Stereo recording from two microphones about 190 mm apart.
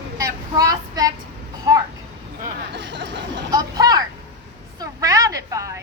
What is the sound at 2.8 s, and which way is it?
Chatter, 65° right (ahead or behind).